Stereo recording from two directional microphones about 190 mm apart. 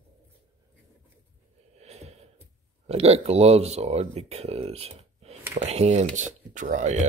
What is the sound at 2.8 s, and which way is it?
Speech, 35° right (ahead or behind).